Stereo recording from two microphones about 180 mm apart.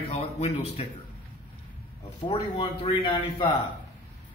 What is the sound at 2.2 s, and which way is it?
Speech, 25° left (ahead or behind).